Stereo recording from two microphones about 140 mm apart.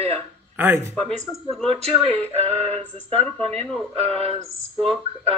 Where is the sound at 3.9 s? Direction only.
50° right (ahead or behind).